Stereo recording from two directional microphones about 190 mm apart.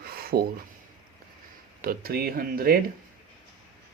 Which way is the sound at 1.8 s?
50° right (ahead or behind).